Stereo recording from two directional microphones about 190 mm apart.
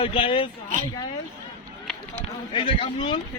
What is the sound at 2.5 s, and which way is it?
Speech, 25° left (ahead or behind).